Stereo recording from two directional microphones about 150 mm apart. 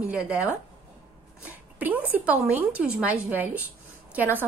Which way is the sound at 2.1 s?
10° right (ahead or behind).